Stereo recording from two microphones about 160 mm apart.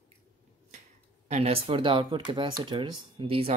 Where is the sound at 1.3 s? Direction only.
40° right (ahead or behind).